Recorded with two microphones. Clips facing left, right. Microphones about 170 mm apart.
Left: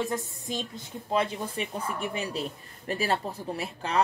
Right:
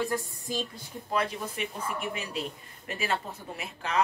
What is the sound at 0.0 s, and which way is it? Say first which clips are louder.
A woman's voice: even; 20° left (ahead or behind).